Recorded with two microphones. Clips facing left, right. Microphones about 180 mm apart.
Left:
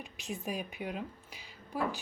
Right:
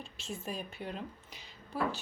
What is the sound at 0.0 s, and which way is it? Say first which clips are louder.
A woman's voice: left 2 dB; 15° left (ahead or behind).